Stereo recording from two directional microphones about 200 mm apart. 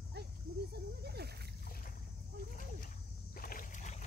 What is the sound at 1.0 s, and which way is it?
Splash, 55° right (ahead or behind).